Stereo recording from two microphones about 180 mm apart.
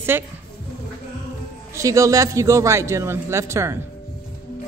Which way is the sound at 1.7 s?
15° right (ahead or behind).